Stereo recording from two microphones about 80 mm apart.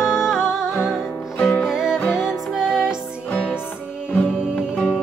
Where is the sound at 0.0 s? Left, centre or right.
Centre.